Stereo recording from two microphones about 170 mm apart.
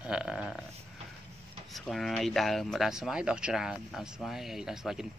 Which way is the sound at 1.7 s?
Centre (ahead or behind).